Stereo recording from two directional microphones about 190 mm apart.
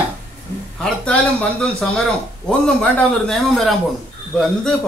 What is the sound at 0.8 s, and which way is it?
A man's voice, 5° left (ahead or behind).